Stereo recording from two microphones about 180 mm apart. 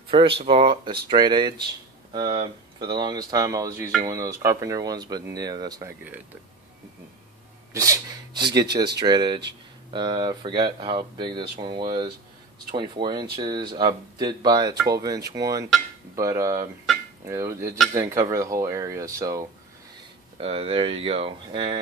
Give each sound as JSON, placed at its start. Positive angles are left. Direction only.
{"t": 0.1, "sound": "speech", "side_deg": -30}
{"t": 7.7, "sound": "speech", "side_deg": -20}
{"t": 20.3, "sound": "speech", "side_deg": -35}